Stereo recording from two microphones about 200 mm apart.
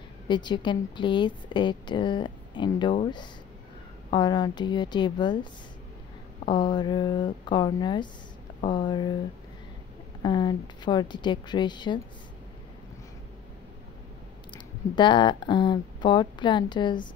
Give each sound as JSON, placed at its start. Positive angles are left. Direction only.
{"t": 0.3, "sound": "a woman's voice", "side_deg": 20}
{"t": 4.1, "sound": "a woman's voice", "side_deg": 20}
{"t": 10.2, "sound": "a woman's voice", "side_deg": 20}
{"t": 14.5, "sound": "a woman's voice", "side_deg": 25}